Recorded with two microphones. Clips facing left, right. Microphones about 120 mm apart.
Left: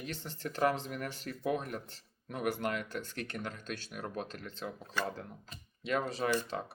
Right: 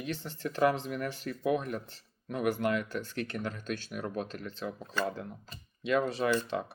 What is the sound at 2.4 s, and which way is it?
Speech, 45° right (ahead or behind).